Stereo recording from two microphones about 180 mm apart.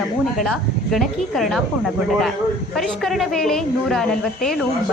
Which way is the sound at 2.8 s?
Centre (ahead or behind).